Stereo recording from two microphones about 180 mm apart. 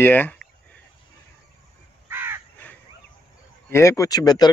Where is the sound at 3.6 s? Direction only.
15° left (ahead or behind).